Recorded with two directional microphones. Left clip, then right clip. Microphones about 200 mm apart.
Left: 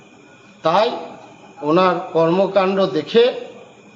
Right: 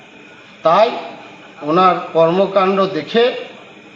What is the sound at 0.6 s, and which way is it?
A man's voice, 30° left (ahead or behind).